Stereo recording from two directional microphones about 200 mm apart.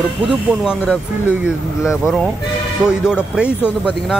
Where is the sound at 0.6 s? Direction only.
Centre (ahead or behind).